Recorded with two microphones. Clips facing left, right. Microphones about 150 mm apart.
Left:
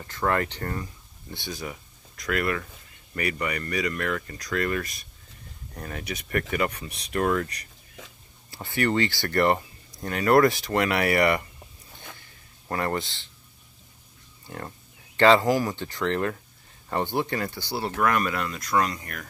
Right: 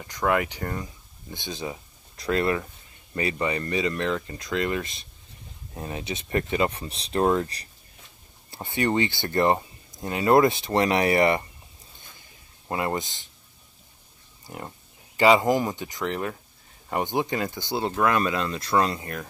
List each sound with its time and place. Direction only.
0.0 s speech: 10° right (ahead or behind)
1.3 s speech: 20° right (ahead or behind)
12.6 s speech: 15° right (ahead or behind)
15.1 s speech: 10° right (ahead or behind)